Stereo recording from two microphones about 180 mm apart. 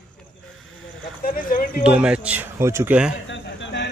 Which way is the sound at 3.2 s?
90° left.